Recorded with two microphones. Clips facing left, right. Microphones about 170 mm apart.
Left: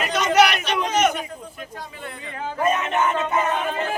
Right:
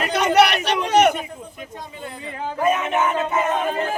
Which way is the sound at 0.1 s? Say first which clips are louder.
Right 1 dB; 65° right (ahead or behind).